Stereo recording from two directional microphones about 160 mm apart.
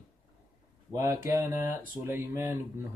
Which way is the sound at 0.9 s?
20° right (ahead or behind).